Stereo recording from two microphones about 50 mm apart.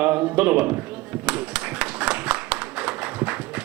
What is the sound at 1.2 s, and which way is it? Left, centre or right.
Clapping, centre.